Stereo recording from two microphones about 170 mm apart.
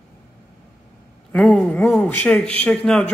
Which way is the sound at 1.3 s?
5° left (ahead or behind).